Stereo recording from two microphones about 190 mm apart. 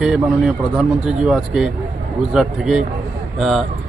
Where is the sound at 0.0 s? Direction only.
5° right (ahead or behind).